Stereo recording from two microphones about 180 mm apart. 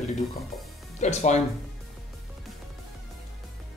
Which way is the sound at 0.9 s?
40° left (ahead or behind).